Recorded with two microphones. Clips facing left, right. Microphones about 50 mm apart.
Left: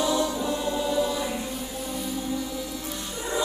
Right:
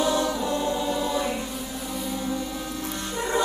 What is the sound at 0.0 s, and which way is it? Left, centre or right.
Choir, right.